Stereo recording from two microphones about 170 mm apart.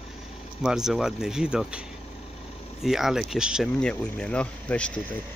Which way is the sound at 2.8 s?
Centre (ahead or behind).